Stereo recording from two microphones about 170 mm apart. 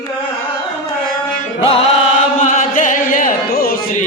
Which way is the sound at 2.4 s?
50° left (ahead or behind).